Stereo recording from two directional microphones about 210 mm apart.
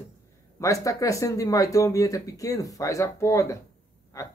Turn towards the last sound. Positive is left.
turn(degrees=15)  # may be behind; listen again after turning